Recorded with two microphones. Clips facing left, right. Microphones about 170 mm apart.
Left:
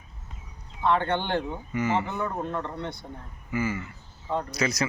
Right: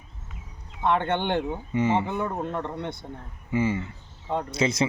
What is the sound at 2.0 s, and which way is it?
Speech, 15° right (ahead or behind).